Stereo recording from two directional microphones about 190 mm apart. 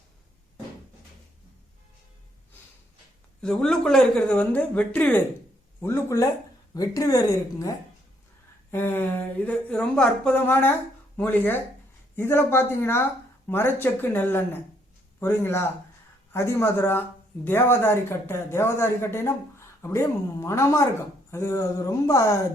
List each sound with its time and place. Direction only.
3.4 s speech: 5° left (ahead or behind)
8.7 s speech: 10° left (ahead or behind)